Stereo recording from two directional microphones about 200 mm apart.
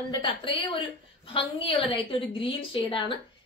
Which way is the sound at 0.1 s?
25° left (ahead or behind).